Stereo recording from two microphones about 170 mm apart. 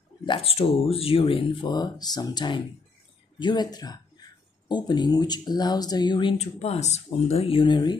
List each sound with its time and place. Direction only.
0.2 s speech: 30° left (ahead or behind)
6.3 s speech: 40° left (ahead or behind)